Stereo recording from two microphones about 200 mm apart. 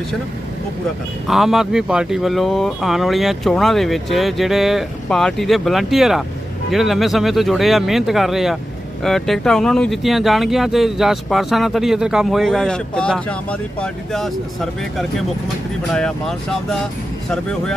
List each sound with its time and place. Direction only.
1.2 s speech: centre (ahead or behind)